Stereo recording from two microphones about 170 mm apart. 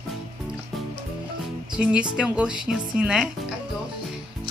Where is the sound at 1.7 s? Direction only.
5° right (ahead or behind).